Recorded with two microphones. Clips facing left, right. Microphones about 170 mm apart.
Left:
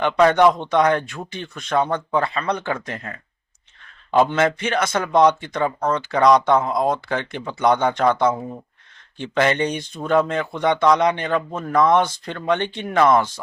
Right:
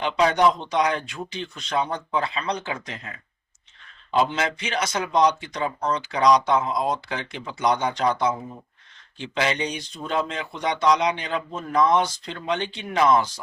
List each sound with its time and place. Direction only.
0.0 s speech: 55° left (ahead or behind)
4.2 s speech: 50° left (ahead or behind)